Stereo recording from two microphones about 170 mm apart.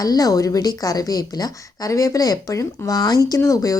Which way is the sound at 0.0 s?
20° left (ahead or behind).